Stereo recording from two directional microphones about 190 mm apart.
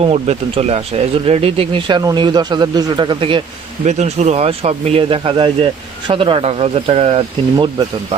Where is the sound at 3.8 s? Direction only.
35° right (ahead or behind).